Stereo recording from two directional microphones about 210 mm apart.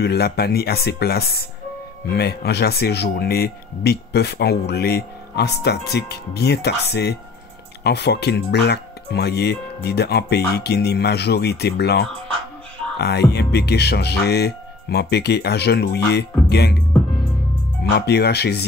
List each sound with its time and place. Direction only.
0.0 s speech: 50° left (ahead or behind)
17.8 s speech: 50° left (ahead or behind)